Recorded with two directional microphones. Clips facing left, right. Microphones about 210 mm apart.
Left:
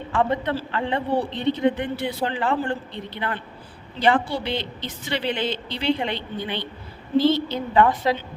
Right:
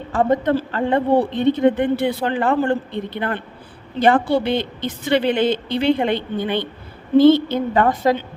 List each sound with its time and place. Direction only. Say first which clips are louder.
0.1 s a woman's voice: right 6 dB; 40° right (ahead or behind)